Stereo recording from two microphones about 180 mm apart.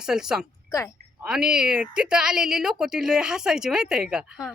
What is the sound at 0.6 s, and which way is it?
Speech, 15° left (ahead or behind).